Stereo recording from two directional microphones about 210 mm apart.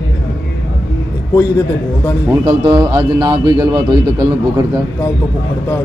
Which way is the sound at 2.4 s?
20° right (ahead or behind).